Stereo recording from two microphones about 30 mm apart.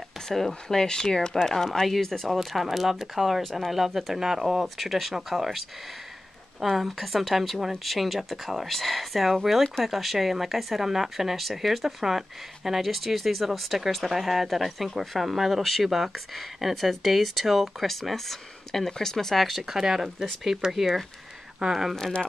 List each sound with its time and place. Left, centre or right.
0.3 s speech: centre
2.3 s speech: centre
4.7 s speech: centre
8.6 s speech: centre
19.6 s speech: centre